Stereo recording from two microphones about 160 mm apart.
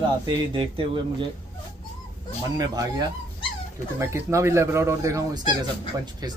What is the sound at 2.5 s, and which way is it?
Speech, 25° right (ahead or behind).